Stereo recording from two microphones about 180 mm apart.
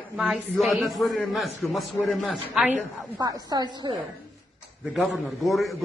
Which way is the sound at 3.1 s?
20° right (ahead or behind).